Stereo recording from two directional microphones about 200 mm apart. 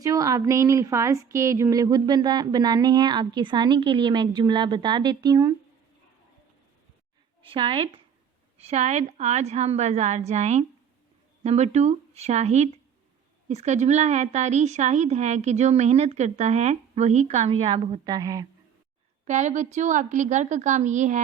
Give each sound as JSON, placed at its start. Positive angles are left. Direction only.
{"t": 0.0, "sound": "a woman's voice", "side_deg": -15}
{"t": 7.4, "sound": "a woman's voice", "side_deg": -25}
{"t": 19.2, "sound": "a woman's voice", "side_deg": -35}